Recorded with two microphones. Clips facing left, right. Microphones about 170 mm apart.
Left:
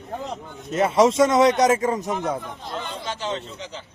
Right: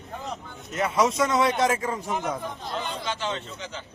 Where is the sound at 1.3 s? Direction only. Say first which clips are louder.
Left 6 dB; 40° left (ahead or behind).